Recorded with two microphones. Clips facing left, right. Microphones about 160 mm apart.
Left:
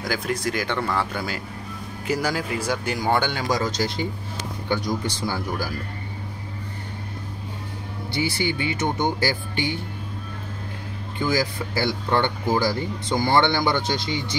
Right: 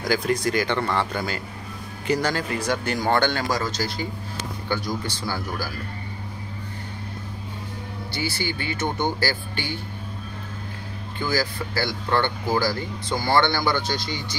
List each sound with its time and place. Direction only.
0.0 s speech: centre (ahead or behind); by 5.7 s 20° left (ahead or behind)
8.1 s speech: 20° left (ahead or behind)
11.1 s speech: 20° left (ahead or behind)